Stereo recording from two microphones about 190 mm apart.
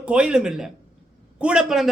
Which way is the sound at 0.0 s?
5° right (ahead or behind).